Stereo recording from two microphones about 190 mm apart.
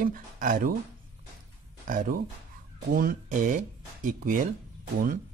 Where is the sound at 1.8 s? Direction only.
45° right (ahead or behind).